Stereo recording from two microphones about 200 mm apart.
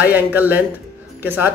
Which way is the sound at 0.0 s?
10° right (ahead or behind).